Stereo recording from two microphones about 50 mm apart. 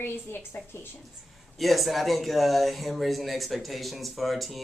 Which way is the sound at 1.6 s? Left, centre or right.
Centre.